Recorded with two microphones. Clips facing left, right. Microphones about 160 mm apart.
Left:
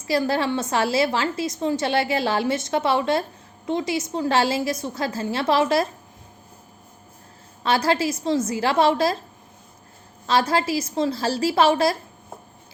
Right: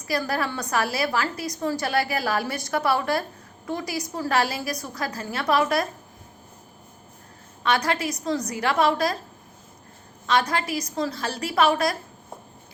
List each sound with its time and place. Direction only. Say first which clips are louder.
0.0 s a woman's voice: left 4 dB; 25° left (ahead or behind)
7.6 s a woman's voice: left 3 dB; 30° left (ahead or behind)
10.2 s a woman's voice: left 3 dB; 30° left (ahead or behind)